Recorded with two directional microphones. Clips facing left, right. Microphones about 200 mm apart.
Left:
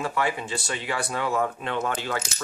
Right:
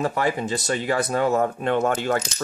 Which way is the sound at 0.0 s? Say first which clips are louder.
Right 4 dB; 40° right (ahead or behind).